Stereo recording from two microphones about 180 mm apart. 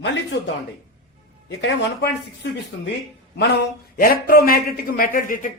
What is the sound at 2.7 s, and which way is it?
Speech, 90° left.